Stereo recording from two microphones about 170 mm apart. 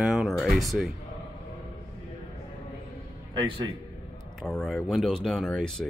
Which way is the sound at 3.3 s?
30° right (ahead or behind).